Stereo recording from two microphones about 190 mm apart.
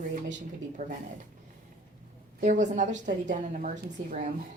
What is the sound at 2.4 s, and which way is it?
A woman's voice, 40° right (ahead or behind).